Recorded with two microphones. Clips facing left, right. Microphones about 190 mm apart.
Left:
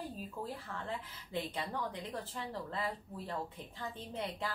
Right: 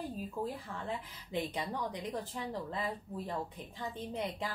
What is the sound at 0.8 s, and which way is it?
A woman's voice, 15° right (ahead or behind).